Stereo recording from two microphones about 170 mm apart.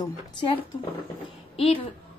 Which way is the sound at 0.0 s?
30° left (ahead or behind).